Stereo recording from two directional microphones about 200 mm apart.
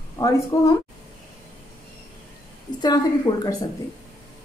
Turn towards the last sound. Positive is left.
turn(degrees=20)  # may be behind; listen again after turning